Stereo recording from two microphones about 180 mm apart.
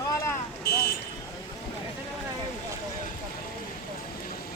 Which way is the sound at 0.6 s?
55° left (ahead or behind).